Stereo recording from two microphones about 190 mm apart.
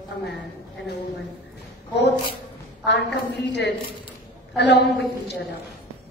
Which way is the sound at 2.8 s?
65° left (ahead or behind).